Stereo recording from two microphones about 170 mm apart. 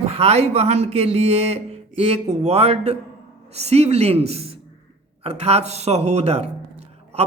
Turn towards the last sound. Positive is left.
turn(degrees=-40)  # may be behind; listen again after turning